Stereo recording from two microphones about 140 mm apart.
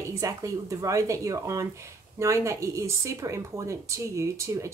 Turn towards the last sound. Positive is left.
turn(degrees=-20)  # may be behind; listen again after turning